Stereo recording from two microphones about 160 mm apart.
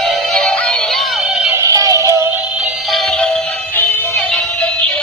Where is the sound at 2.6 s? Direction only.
Centre (ahead or behind).